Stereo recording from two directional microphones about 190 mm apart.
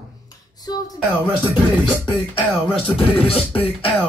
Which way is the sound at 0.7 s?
20° left (ahead or behind).